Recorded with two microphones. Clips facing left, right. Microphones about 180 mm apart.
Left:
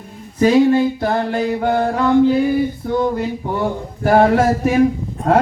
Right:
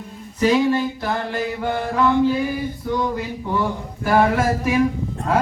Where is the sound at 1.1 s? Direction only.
55° left (ahead or behind).